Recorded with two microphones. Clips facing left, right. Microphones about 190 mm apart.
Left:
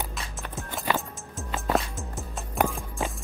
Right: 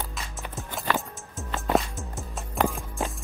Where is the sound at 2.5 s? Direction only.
Centre (ahead or behind).